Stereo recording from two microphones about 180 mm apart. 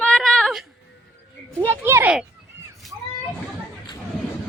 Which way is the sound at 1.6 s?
15° right (ahead or behind).